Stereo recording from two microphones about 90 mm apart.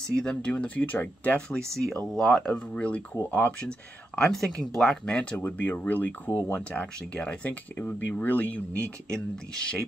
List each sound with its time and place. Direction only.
0.1 s speech: 10° left (ahead or behind)
1.7 s speech: 5° left (ahead or behind); by 8.6 s 20° left (ahead or behind)
9.1 s speech: 10° left (ahead or behind)